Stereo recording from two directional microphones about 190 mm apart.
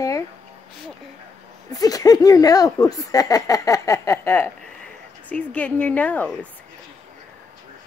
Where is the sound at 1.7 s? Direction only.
20° left (ahead or behind).